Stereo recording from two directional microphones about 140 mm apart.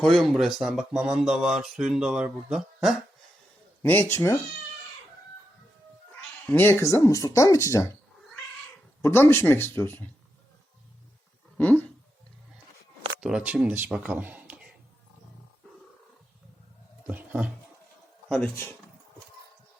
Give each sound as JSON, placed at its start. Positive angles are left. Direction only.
{"t": 0.0, "sound": "speech", "side_deg": 0}
{"t": 3.8, "sound": "speech", "side_deg": 15}
{"t": 6.4, "sound": "speech", "side_deg": 15}
{"t": 9.0, "sound": "speech", "side_deg": 15}
{"t": 11.5, "sound": "a sound", "side_deg": 10}
{"t": 13.1, "sound": "speech", "side_deg": -5}
{"t": 17.1, "sound": "a sound", "side_deg": -10}
{"t": 18.3, "sound": "speech", "side_deg": 5}